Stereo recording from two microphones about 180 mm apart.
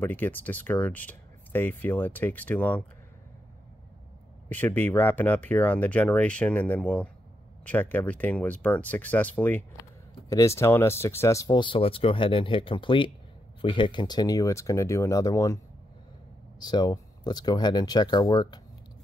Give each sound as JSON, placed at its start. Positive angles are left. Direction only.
{"t": 0.0, "sound": "speech", "side_deg": 10}
{"t": 4.5, "sound": "speech", "side_deg": 10}